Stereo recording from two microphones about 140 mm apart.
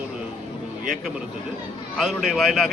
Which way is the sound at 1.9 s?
Centre (ahead or behind).